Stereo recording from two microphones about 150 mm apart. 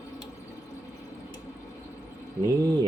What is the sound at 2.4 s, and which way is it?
Bird, 25° right (ahead or behind).